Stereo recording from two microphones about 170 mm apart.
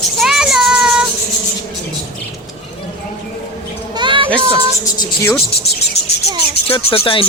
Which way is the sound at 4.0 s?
30° right (ahead or behind).